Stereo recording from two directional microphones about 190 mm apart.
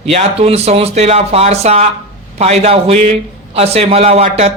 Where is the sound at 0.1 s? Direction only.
30° right (ahead or behind).